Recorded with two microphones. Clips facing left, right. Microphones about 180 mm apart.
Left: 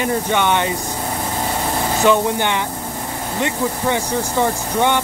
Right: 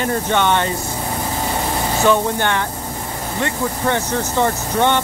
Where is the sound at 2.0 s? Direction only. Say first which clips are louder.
Left 1 dB; 15° left (ahead or behind).